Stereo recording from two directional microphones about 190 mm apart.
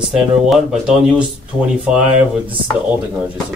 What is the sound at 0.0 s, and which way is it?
Speech, centre (ahead or behind).